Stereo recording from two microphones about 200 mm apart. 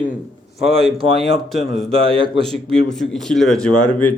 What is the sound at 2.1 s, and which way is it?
Speech, 25° right (ahead or behind).